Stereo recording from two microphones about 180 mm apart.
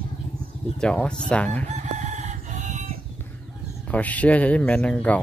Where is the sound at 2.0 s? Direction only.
40° right (ahead or behind).